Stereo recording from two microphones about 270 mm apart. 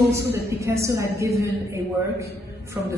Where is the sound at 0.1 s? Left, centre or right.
Centre.